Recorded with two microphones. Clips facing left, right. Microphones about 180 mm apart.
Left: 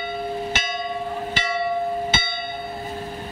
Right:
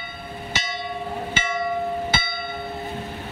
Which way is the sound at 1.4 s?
35° left (ahead or behind).